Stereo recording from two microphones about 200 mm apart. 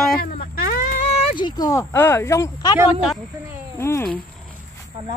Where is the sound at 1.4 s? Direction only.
20° left (ahead or behind).